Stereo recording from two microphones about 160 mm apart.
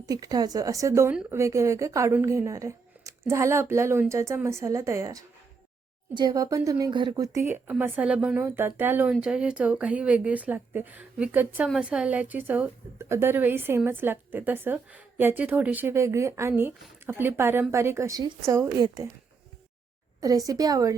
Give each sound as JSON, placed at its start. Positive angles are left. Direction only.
{"t": 0.0, "sound": "a woman's voice", "side_deg": -20}
{"t": 1.1, "sound": "speech", "side_deg": -5}
{"t": 1.4, "sound": "a woman's voice", "side_deg": -20}
{"t": 20.2, "sound": "a woman's voice", "side_deg": -20}